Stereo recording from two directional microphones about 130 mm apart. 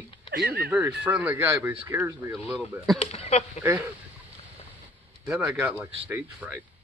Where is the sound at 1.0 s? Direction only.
10° right (ahead or behind).